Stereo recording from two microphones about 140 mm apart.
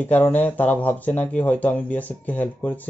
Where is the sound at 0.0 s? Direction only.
10° left (ahead or behind).